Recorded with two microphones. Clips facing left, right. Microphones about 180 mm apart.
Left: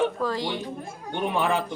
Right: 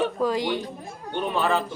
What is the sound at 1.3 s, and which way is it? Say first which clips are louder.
Speech: right 1 dB; 15° left (ahead or behind).